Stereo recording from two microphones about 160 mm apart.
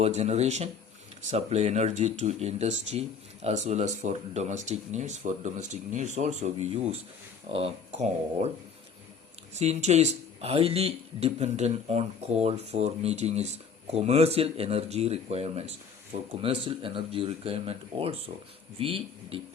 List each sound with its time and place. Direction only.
0.0 s speech: 40° right (ahead or behind)
7.5 s speech: 40° right (ahead or behind)
9.6 s speech: 45° right (ahead or behind)